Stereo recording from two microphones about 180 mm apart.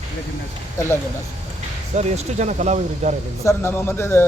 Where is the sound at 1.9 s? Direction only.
40° right (ahead or behind).